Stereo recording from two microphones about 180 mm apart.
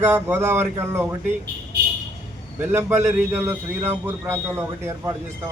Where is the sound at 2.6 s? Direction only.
10° right (ahead or behind).